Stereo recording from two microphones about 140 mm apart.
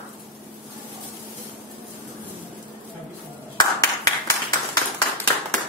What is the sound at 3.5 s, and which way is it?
Clapping, 25° left (ahead or behind).